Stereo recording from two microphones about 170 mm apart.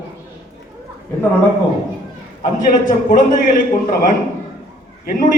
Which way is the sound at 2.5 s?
50° left (ahead or behind).